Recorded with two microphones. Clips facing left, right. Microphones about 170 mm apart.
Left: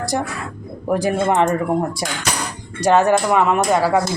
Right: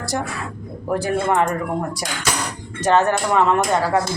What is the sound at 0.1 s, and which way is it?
A woman's voice, 20° left (ahead or behind).